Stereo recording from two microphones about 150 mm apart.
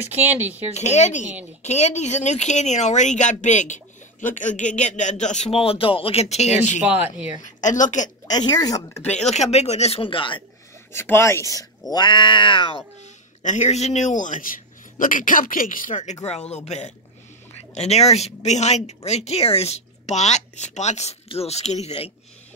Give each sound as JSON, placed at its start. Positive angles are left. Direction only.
{"t": 0.1, "sound": "speech", "side_deg": -15}
{"t": 0.7, "sound": "speech", "side_deg": 50}
{"t": 6.9, "sound": "speech", "side_deg": -10}
{"t": 7.4, "sound": "speech", "side_deg": 55}
{"t": 8.3, "sound": "speech", "side_deg": 25}
{"t": 9.3, "sound": "speech", "side_deg": 45}
{"t": 10.9, "sound": "speech", "side_deg": 15}
{"t": 13.0, "sound": "speech", "side_deg": 50}